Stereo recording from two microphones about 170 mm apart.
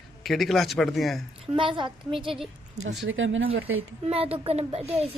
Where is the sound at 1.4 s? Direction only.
30° right (ahead or behind).